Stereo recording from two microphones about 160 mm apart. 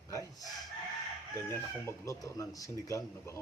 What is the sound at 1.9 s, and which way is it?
Speech, 20° left (ahead or behind).